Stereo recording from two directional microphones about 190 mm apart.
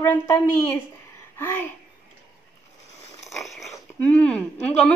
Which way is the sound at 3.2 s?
Centre (ahead or behind).